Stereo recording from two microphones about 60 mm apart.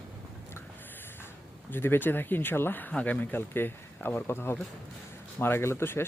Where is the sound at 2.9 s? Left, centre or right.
Left.